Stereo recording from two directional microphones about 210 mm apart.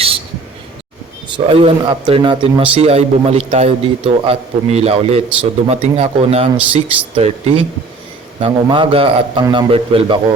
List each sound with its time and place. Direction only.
1.3 s speech: 25° right (ahead or behind)